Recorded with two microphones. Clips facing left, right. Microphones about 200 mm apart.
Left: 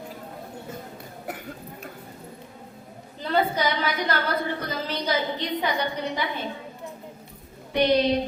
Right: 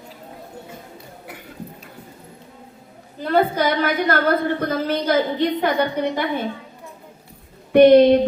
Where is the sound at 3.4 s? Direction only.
55° right (ahead or behind).